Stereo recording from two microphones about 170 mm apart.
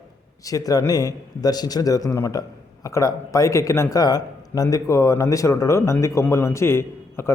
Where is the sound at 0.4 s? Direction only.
20° left (ahead or behind).